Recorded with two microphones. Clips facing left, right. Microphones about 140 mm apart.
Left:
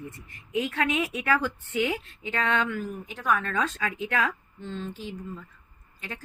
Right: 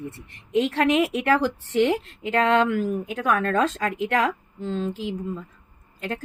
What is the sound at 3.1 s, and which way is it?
Speech, 60° right (ahead or behind).